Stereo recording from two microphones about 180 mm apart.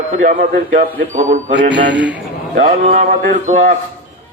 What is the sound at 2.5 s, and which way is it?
A man's voice, 45° right (ahead or behind).